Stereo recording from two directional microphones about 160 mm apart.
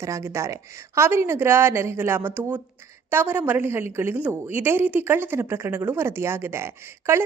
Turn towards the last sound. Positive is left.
turn(degrees=-15)  # may be behind; listen again after turning